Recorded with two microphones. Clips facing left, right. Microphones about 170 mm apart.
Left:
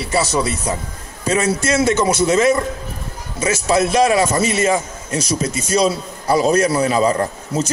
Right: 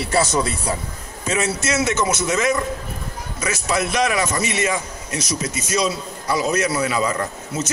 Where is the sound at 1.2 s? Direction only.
30° left (ahead or behind).